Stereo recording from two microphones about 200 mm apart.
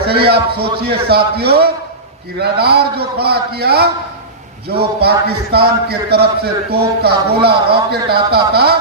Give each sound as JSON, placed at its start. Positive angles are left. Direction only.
{"t": 0.3, "sound": "a man's voice", "side_deg": -55}